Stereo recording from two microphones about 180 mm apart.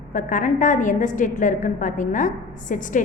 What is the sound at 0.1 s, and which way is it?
A woman's voice, 45° left (ahead or behind).